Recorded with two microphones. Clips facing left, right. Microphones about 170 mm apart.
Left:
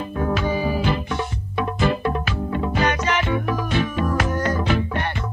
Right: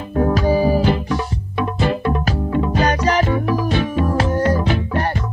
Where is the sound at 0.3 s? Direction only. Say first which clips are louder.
Right 6 dB; 40° right (ahead or behind).